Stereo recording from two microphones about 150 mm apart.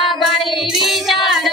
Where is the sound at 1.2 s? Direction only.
Centre (ahead or behind).